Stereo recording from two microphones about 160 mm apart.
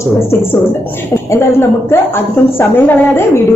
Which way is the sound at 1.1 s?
15° left (ahead or behind).